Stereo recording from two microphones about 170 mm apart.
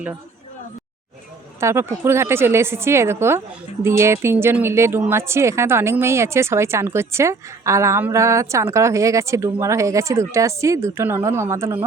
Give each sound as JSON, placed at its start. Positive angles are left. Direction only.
{"t": 1.6, "sound": "a woman's voice", "side_deg": -15}